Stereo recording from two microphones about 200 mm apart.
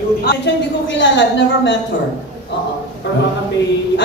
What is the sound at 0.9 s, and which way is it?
Speech, 65° left (ahead or behind).